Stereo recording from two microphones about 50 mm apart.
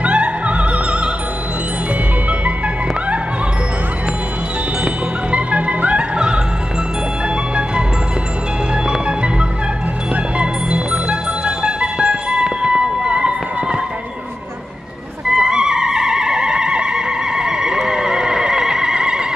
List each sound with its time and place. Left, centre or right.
0.0 s opera: right
4.8 s opera: right
8.8 s music: centre
15.3 s music: centre